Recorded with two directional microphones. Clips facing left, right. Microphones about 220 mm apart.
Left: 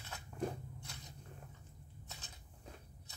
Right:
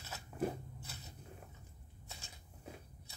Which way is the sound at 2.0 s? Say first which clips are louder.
Right 3 dB; 10° right (ahead or behind).